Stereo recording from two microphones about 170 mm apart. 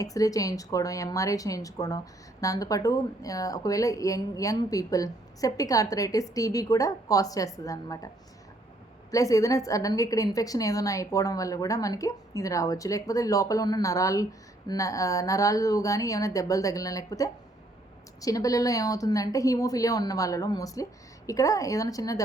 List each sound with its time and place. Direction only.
0.0 s speech: 20° left (ahead or behind)